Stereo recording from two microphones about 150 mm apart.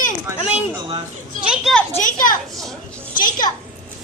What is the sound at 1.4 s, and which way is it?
Speech, 5° right (ahead or behind).